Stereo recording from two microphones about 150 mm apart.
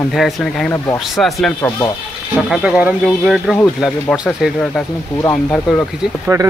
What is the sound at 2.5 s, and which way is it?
Speech, 5° right (ahead or behind).